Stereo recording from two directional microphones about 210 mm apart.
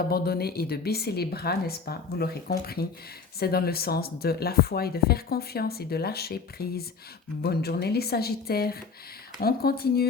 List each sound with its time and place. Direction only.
0.1 s speech: 50° left (ahead or behind)